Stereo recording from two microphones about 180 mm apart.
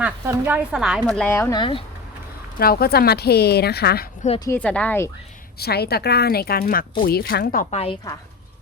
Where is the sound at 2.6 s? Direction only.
60° left (ahead or behind).